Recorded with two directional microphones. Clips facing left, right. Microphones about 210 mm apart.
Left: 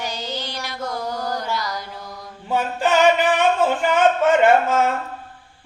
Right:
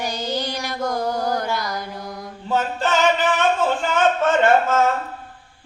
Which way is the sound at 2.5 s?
15° left (ahead or behind).